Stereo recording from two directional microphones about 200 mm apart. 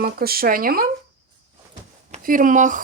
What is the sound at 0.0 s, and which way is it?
Speech, 50° right (ahead or behind).